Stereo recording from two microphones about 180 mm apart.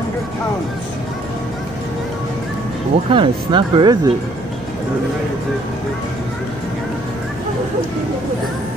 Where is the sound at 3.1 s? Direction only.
30° right (ahead or behind).